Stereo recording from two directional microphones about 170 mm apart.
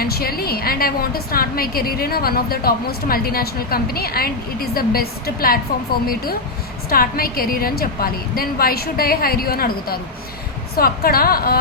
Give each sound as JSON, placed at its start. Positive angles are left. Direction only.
{"t": 0.0, "sound": "a woman's voice", "side_deg": 60}
{"t": 6.9, "sound": "a woman's voice", "side_deg": 60}